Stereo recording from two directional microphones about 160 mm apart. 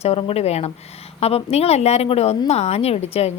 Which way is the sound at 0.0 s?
35° left (ahead or behind).